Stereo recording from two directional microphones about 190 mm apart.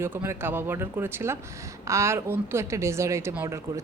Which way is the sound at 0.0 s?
10° right (ahead or behind).